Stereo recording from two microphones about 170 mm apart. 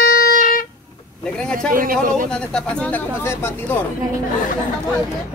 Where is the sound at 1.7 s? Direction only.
55° right (ahead or behind).